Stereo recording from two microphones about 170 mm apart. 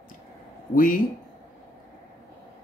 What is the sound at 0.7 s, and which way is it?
Speech, 55° left (ahead or behind).